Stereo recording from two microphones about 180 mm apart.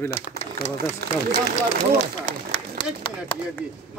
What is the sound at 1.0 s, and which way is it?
Speech, 60° right (ahead or behind).